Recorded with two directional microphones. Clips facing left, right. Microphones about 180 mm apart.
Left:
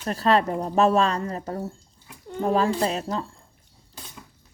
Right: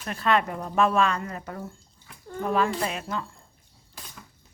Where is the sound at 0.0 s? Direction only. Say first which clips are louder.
Left 3 dB; 35° left (ahead or behind).